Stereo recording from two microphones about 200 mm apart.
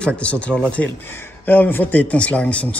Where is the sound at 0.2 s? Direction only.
5° left (ahead or behind).